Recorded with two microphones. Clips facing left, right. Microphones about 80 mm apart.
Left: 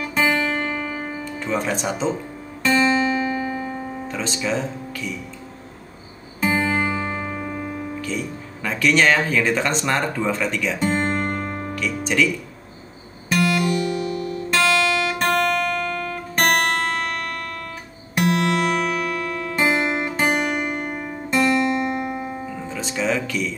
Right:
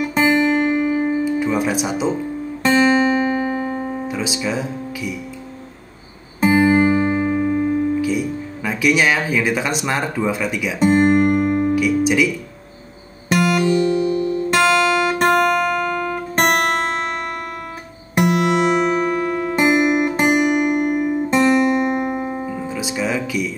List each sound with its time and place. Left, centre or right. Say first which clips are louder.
0.0 s guitar: right 5 dB; right
2.6 s music: right 4 dB; right
4.1 s speech: left 1 dB; centre
6.4 s guitar: right 7 dB; centre
13.3 s music: right 4 dB; right
18.9 s guitar: right 6 dB; right
21.4 s music: right 3 dB; right
22.7 s music: even; centre